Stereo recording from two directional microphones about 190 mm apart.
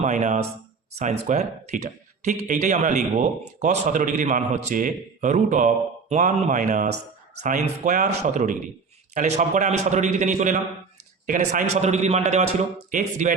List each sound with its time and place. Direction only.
0.0 s a man's voice: 40° right (ahead or behind)